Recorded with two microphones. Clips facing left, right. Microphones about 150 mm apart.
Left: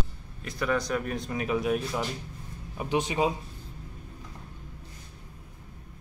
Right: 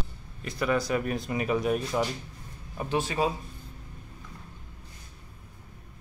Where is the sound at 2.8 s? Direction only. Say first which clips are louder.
Left 1 dB; 15° left (ahead or behind).